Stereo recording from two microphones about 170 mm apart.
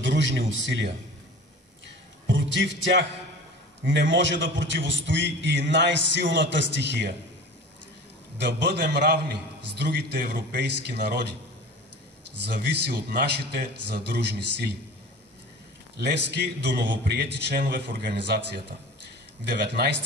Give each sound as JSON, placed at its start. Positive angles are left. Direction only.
{"t": 0.0, "sound": "a man's voice", "side_deg": -90}
{"t": 2.2, "sound": "a man's voice", "side_deg": -90}
{"t": 8.4, "sound": "a man's voice", "side_deg": -80}
{"t": 12.4, "sound": "a man's voice", "side_deg": -75}
{"t": 16.0, "sound": "a man's voice", "side_deg": -80}